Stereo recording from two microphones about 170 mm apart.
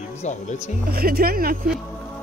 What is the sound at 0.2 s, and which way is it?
Speech, 45° left (ahead or behind).